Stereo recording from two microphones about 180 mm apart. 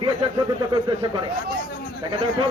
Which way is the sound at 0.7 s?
25° right (ahead or behind).